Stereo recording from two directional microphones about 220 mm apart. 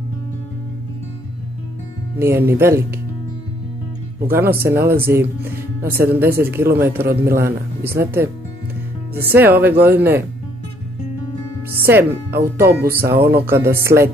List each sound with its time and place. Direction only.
2.1 s speech: 10° right (ahead or behind)
4.3 s speech: 10° right (ahead or behind)
11.9 s speech: 10° right (ahead or behind)
12.3 s speech: 45° right (ahead or behind)
12.9 s speech: 10° right (ahead or behind)
13.9 s music: 35° right (ahead or behind)